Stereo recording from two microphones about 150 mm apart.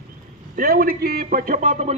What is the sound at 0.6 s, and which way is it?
A man's voice, 80° right.